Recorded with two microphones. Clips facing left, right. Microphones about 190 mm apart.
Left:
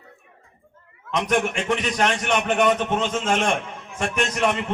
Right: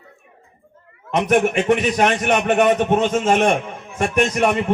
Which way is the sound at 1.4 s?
55° right (ahead or behind).